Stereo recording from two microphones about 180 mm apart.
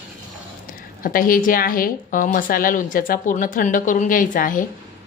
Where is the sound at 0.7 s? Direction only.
50° left (ahead or behind).